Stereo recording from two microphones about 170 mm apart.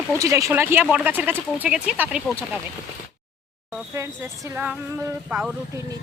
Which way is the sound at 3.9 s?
15° right (ahead or behind).